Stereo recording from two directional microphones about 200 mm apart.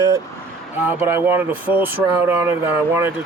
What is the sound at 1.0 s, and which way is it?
Speech, 10° right (ahead or behind).